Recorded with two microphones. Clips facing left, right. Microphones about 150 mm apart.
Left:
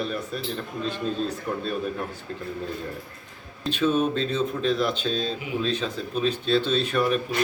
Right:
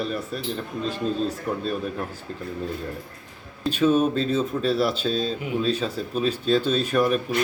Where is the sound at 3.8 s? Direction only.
5° right (ahead or behind).